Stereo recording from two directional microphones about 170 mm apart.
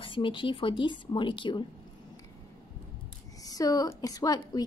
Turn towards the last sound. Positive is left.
turn(degrees=20)  # may be behind; listen again after turning